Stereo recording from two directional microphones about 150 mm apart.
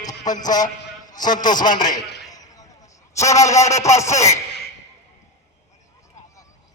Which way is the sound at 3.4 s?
20° left (ahead or behind).